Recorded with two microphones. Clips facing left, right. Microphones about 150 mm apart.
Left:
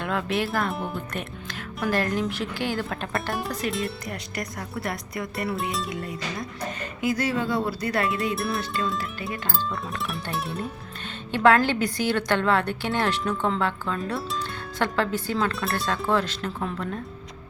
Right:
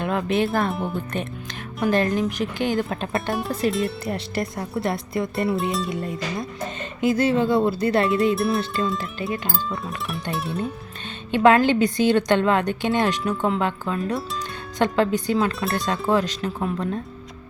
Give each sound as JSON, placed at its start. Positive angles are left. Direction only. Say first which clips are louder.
{"t": 0.0, "sound": "speech", "louder": "right 4 dB", "side_deg": -20}
{"t": 3.7, "sound": "music", "louder": "right 6 dB", "side_deg": 0}
{"t": 4.0, "sound": "speech", "louder": "right 7 dB", "side_deg": -30}
{"t": 8.4, "sound": "music", "louder": "right 5 dB", "side_deg": 0}
{"t": 10.3, "sound": "music", "louder": "right 3 dB", "side_deg": 0}
{"t": 11.3, "sound": "a woman's voice", "louder": "right 3 dB", "side_deg": -20}